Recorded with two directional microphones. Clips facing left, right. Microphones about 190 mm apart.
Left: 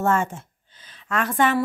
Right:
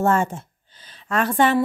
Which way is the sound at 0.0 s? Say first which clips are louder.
Right 2 dB; 35° right (ahead or behind).